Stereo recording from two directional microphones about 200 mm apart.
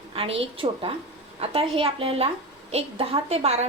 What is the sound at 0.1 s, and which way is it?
A woman's voice, 30° right (ahead or behind).